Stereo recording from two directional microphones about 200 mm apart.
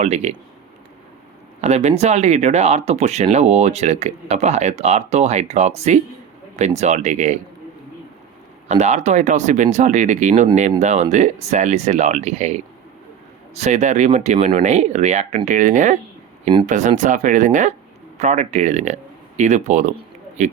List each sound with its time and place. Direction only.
0.0 s speech: 35° right (ahead or behind)
1.6 s speech: 35° right (ahead or behind)
8.6 s speech: 35° right (ahead or behind)